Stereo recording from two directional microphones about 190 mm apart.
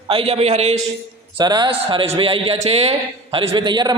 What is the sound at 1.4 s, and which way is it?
A man's voice, 20° right (ahead or behind).